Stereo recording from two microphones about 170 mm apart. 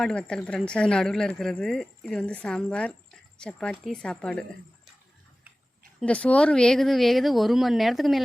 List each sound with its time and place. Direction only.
0.0 s speech: 5° left (ahead or behind)
6.0 s speech: 5° left (ahead or behind)